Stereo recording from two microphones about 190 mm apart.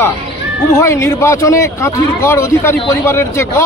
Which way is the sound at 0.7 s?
15° left (ahead or behind).